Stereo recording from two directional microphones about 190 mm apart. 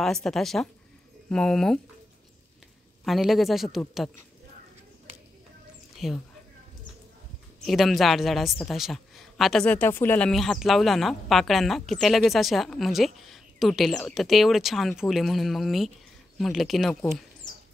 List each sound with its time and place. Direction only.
0.0 s a man's voice: centre (ahead or behind)
3.1 s a man's voice: centre (ahead or behind)
6.0 s a man's voice: centre (ahead or behind)
7.6 s a man's voice: centre (ahead or behind)